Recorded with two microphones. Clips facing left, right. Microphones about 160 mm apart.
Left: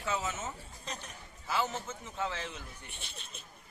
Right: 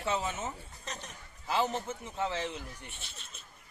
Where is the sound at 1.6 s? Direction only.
15° right (ahead or behind).